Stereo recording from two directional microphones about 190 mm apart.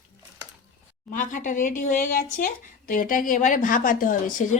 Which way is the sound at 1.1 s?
45° left (ahead or behind).